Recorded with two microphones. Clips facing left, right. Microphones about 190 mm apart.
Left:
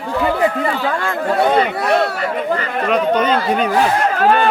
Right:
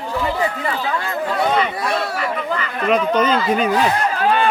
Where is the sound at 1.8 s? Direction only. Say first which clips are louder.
Left 6 dB; 65° left (ahead or behind).